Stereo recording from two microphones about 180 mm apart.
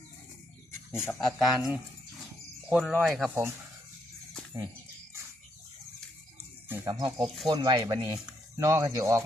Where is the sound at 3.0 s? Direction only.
5° right (ahead or behind).